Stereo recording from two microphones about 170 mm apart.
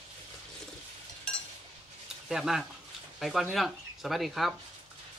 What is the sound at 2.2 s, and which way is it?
Speech, 5° right (ahead or behind).